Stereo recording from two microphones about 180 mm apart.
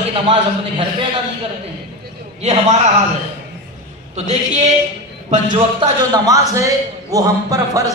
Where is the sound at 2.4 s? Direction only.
40° right (ahead or behind).